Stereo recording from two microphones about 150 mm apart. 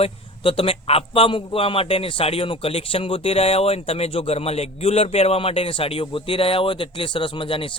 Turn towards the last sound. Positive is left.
turn(degrees=35)  # may be behind; listen again after turning